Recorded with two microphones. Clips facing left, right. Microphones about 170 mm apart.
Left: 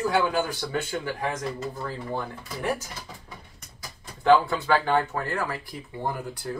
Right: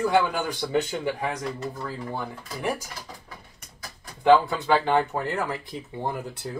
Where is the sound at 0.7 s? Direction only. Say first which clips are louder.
Right 6 dB; 15° right (ahead or behind).